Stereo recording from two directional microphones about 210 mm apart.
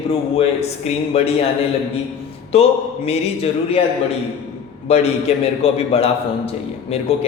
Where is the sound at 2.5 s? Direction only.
30° left (ahead or behind).